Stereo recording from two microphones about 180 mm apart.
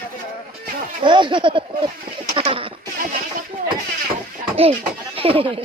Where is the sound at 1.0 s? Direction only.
25° right (ahead or behind).